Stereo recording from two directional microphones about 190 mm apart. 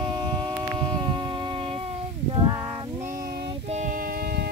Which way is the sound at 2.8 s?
15° right (ahead or behind).